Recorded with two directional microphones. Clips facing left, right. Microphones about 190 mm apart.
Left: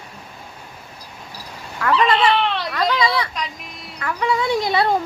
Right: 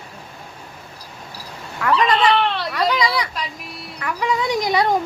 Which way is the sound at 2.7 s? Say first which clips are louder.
Even; 15° right (ahead or behind).